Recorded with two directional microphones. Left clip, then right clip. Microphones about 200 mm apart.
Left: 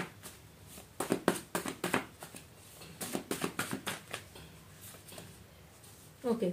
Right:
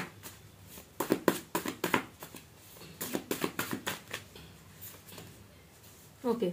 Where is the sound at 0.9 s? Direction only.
20° right (ahead or behind).